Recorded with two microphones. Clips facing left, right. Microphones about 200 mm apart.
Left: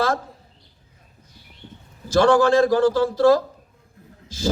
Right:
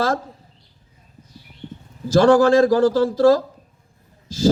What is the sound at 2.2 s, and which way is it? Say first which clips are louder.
A man's voice: right 3 dB; 35° right (ahead or behind).